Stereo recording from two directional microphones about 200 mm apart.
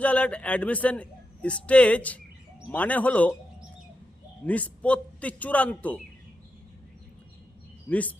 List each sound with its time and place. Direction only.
0.0 s a man's voice: 5° left (ahead or behind)
4.4 s a man's voice: 5° left (ahead or behind)
7.9 s a man's voice: 5° left (ahead or behind)